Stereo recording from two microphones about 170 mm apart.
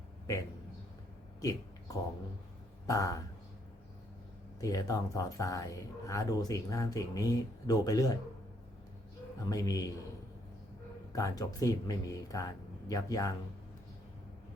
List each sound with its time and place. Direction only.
1.4 s a sound: 20° left (ahead or behind)
2.8 s speech: 20° left (ahead or behind)
4.6 s speech: 20° left (ahead or behind)
9.4 s speech: 20° left (ahead or behind)
11.1 s speech: 20° left (ahead or behind)